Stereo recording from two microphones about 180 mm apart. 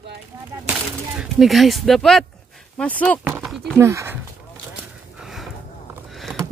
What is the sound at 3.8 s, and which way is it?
Speech, 15° right (ahead or behind).